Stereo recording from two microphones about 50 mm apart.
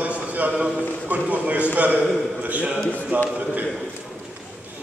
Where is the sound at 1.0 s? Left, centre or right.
Right.